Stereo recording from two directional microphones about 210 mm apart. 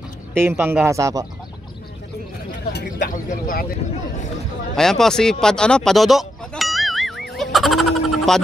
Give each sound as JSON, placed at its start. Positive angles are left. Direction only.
{"t": 0.3, "sound": "speech", "side_deg": -10}
{"t": 2.7, "sound": "speech", "side_deg": 50}
{"t": 3.3, "sound": "speech", "side_deg": 40}
{"t": 4.7, "sound": "bleat", "side_deg": 0}